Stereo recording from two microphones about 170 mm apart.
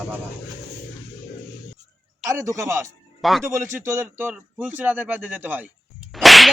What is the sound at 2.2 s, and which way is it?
Speech, 20° right (ahead or behind).